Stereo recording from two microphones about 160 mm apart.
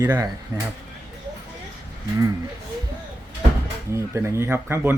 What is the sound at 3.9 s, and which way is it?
Speech, 15° right (ahead or behind).